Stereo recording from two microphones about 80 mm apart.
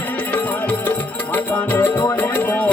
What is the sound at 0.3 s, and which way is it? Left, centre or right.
Music, left.